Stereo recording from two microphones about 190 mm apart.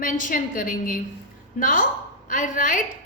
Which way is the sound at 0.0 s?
45° left (ahead or behind).